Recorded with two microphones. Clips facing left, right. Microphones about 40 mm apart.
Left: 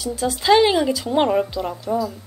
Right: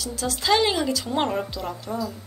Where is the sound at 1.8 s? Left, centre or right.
Centre.